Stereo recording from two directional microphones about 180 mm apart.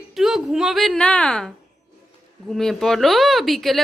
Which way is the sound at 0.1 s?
Centre (ahead or behind).